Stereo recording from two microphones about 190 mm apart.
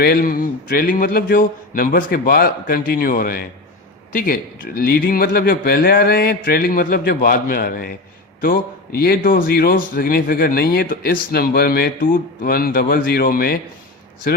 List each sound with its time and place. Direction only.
0.0 s a man's voice: 55° left (ahead or behind)